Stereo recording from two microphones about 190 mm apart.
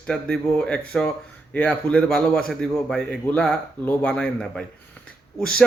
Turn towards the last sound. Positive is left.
turn(degrees=5)  # may be behind; listen again after turning